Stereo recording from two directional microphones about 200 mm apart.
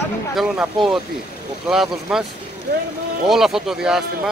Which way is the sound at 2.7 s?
50° right (ahead or behind).